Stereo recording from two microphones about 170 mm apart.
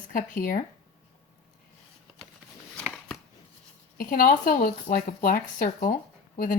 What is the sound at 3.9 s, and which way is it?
Speech, 55° left (ahead or behind).